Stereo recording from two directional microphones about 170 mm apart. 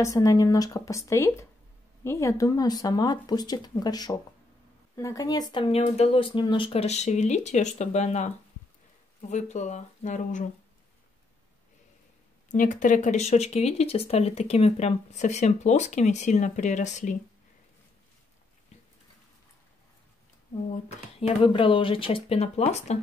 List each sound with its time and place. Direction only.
0.0 s speech: 20° left (ahead or behind); by 8.3 s 40° left (ahead or behind)
9.3 s speech: 45° left (ahead or behind)
12.4 s speech: 50° left (ahead or behind)
21.2 s speech: 30° left (ahead or behind)